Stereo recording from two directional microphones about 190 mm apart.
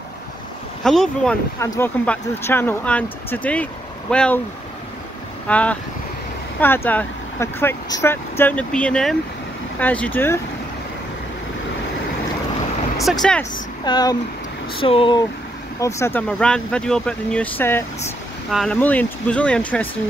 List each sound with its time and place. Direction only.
0.8 s speech: 5° left (ahead or behind)
1.6 s speech: 15° left (ahead or behind)
5.5 s speech: 5° left (ahead or behind)
13.0 s speech: centre (ahead or behind)
13.4 s speech: 20° left (ahead or behind)
15.8 s speech: 15° left (ahead or behind)